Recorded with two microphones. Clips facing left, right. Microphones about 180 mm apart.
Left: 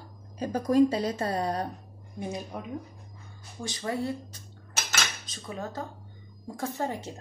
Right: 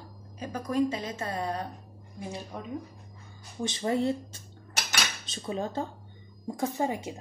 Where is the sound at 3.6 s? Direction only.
25° right (ahead or behind).